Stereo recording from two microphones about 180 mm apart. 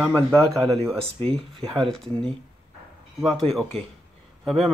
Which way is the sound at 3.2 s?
Centre (ahead or behind).